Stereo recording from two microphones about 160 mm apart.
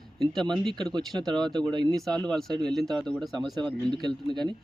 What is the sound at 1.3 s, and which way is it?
Speech, 25° right (ahead or behind).